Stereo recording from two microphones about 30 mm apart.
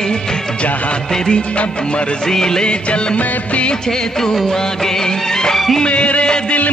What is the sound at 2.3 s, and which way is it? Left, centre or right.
Music, left.